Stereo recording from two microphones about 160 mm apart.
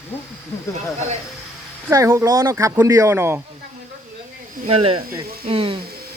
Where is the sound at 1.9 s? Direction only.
20° right (ahead or behind).